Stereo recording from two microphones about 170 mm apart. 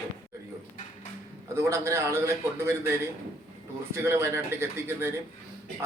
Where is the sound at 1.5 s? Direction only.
15° right (ahead or behind).